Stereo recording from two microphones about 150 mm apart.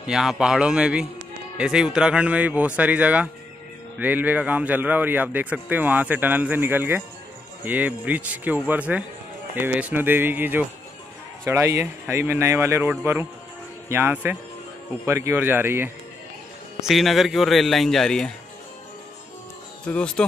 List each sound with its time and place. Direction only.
0.0 s speech: 5° right (ahead or behind)
16.8 s speech: centre (ahead or behind)
19.9 s speech: 5° left (ahead or behind)